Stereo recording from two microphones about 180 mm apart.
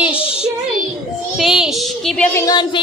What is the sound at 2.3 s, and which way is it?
Music, 20° left (ahead or behind).